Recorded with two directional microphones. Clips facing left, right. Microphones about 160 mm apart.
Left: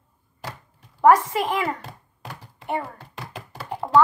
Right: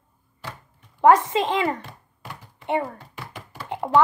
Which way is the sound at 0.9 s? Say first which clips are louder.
Even; 20° right (ahead or behind).